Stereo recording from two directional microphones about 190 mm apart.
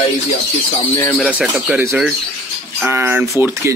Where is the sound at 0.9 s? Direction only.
10° left (ahead or behind).